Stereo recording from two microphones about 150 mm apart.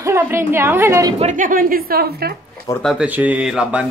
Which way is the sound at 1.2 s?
60° right (ahead or behind).